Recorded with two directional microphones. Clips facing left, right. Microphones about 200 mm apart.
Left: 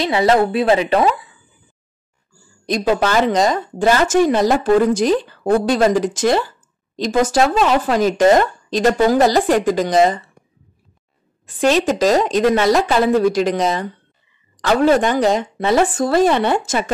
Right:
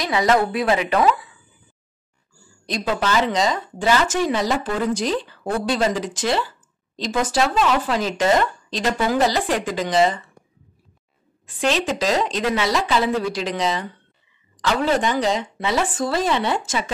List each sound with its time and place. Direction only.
0.0 s speech: 30° left (ahead or behind)
2.6 s a woman's voice: 50° left (ahead or behind)
11.4 s a woman's voice: 45° left (ahead or behind)